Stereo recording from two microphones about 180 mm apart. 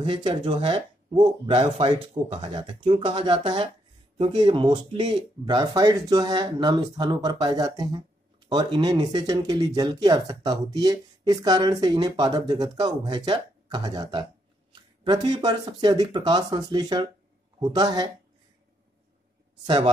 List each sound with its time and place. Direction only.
0.0 s speech: 25° right (ahead or behind)
19.6 s speech: 25° right (ahead or behind)